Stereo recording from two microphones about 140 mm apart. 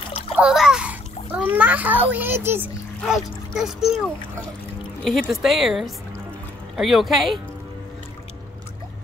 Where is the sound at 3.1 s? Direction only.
5° right (ahead or behind).